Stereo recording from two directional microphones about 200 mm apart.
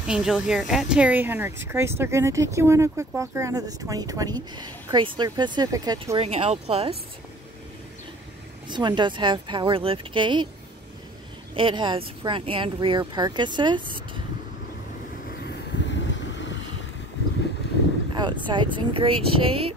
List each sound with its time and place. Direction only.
0.0 s speech: 5° right (ahead or behind)
6.2 s speech: 30° right (ahead or behind)
8.6 s speech: 20° right (ahead or behind)
11.5 s speech: 25° right (ahead or behind)
15.4 s vehicle: 65° left (ahead or behind)
18.1 s speech: 20° right (ahead or behind)